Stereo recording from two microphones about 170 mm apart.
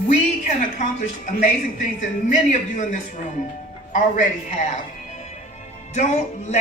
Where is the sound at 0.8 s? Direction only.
45° left (ahead or behind).